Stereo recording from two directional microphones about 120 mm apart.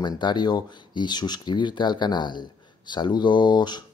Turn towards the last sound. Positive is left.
turn(degrees=35)  # may be behind; listen again after turning